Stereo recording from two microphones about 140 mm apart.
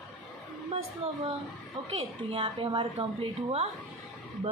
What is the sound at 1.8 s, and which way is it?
A woman's voice, 40° right (ahead or behind).